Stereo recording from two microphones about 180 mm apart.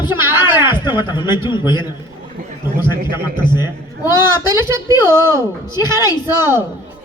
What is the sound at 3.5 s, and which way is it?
A man's voice, 25° left (ahead or behind).